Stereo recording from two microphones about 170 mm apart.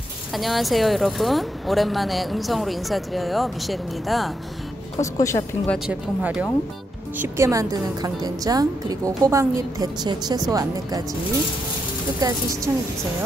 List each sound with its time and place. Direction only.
0.3 s speech: centre (ahead or behind)
5.0 s a woman's voice: 20° left (ahead or behind)
5.9 s speech: 5° right (ahead or behind)
7.2 s a woman's voice: 15° right (ahead or behind)
12.2 s a woman's voice: 20° right (ahead or behind)